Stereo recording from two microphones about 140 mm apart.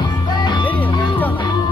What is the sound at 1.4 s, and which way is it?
Music, 30° left (ahead or behind).